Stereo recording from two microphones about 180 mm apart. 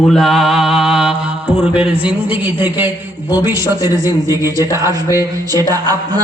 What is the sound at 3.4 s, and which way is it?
A man's voice, 15° right (ahead or behind).